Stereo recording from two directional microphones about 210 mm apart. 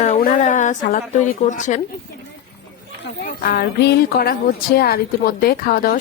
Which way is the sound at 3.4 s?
45° left (ahead or behind).